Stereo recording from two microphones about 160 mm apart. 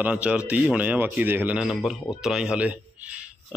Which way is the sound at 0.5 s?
10° right (ahead or behind).